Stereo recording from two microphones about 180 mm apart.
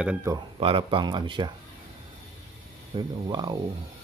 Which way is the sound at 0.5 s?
30° right (ahead or behind).